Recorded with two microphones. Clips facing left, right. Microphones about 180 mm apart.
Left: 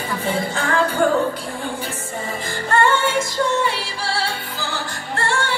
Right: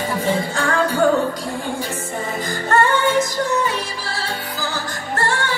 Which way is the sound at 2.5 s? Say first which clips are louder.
Even; 40° right (ahead or behind).